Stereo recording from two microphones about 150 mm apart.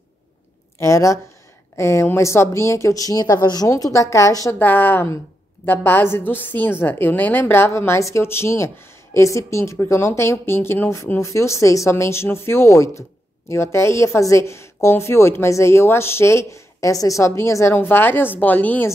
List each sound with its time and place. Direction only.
0.7 s a woman's voice: 20° left (ahead or behind)